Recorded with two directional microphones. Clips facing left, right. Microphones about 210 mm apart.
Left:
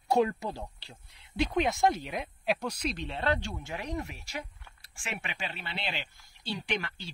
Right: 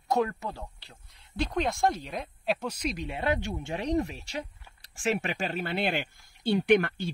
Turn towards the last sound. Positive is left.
turn(degrees=-55)  # may be behind; listen again after turning